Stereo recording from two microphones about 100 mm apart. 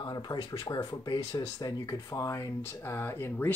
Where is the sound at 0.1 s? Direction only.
45° left (ahead or behind).